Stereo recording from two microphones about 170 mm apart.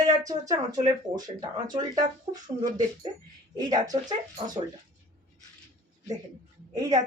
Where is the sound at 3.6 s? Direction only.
25° right (ahead or behind).